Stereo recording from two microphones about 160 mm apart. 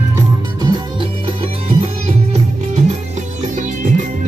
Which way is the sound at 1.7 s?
40° right (ahead or behind).